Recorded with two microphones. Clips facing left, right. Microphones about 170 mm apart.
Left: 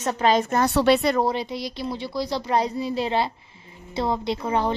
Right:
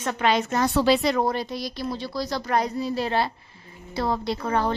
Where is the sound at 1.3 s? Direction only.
20° left (ahead or behind).